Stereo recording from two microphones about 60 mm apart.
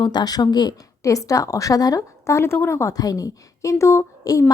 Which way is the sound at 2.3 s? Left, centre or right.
Left.